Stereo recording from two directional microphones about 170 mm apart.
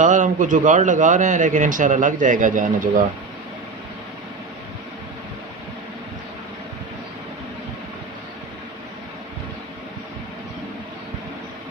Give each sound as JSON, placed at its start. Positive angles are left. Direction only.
{"t": 0.0, "sound": "a man's voice", "side_deg": -45}